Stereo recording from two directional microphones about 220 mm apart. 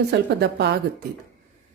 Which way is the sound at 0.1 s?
50° right (ahead or behind).